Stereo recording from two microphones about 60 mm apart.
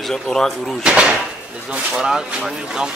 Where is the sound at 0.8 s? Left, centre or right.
Centre.